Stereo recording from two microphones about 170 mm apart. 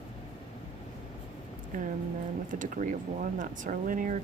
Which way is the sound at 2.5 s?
50° right (ahead or behind).